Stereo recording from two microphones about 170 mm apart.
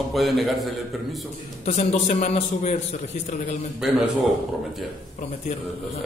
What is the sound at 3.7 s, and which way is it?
A man's voice, centre (ahead or behind).